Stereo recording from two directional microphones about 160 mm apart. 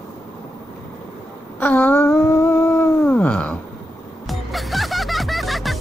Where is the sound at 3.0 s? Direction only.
10° left (ahead or behind).